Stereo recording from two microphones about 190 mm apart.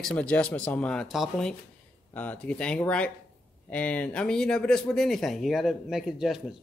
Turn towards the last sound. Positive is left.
turn(degrees=0)  # may be behind; listen again after turning